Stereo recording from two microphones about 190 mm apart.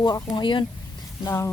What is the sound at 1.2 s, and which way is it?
Speech, 15° left (ahead or behind).